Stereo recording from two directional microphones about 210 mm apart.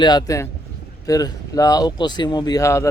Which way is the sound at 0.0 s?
20° left (ahead or behind).